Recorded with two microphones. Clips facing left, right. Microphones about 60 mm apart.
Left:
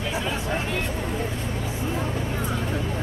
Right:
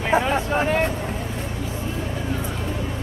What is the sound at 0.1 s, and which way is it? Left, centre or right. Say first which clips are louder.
Speech: right 10 dB; right.